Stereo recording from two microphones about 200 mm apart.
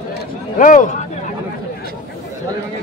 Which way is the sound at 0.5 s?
40° left (ahead or behind).